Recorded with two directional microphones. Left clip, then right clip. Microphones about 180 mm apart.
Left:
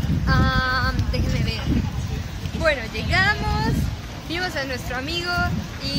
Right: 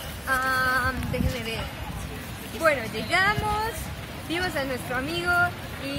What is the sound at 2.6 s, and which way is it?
Speech, 15° right (ahead or behind).